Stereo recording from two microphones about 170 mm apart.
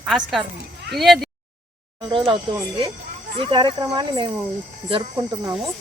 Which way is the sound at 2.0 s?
30° right (ahead or behind).